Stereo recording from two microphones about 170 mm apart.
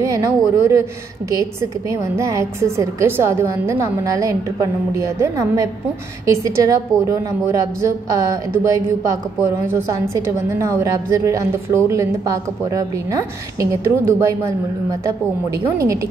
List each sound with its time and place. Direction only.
0.0 s a woman's voice: 20° right (ahead or behind)
15.8 s a woman's voice: 20° right (ahead or behind)